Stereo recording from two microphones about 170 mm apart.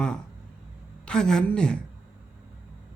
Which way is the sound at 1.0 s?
5° left (ahead or behind).